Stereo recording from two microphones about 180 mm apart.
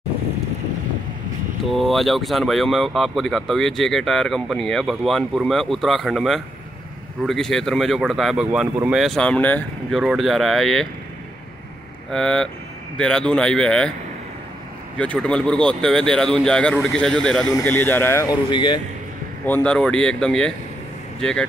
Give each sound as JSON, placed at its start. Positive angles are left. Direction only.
{"t": 1.7, "sound": "speech", "side_deg": 0}
{"t": 12.1, "sound": "speech", "side_deg": 5}
{"t": 15.0, "sound": "speech", "side_deg": 5}
{"t": 19.4, "sound": "speech", "side_deg": 10}